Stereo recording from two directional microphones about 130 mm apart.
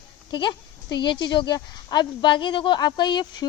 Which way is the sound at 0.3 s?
35° left (ahead or behind).